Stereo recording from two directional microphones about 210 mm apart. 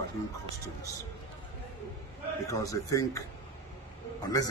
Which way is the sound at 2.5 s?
15° left (ahead or behind).